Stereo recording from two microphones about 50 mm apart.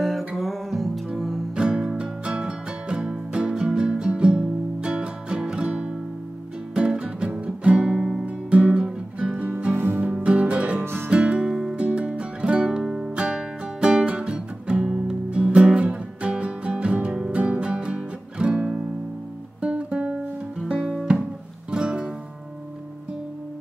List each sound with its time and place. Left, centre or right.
0.4 s music: centre
1.5 s music: centre
10.8 s music: right
11.1 s music: right